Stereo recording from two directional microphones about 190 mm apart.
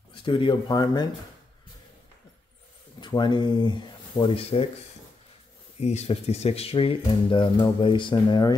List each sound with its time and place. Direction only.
0.1 s speech: 25° left (ahead or behind)
3.0 s speech: 25° left (ahead or behind)
5.8 s speech: 35° left (ahead or behind)